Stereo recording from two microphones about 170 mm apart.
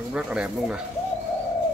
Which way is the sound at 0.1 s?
5° right (ahead or behind).